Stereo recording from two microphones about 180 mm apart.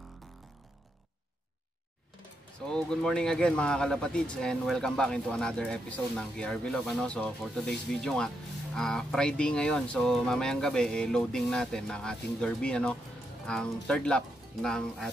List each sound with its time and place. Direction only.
2.6 s speech: 5° left (ahead or behind)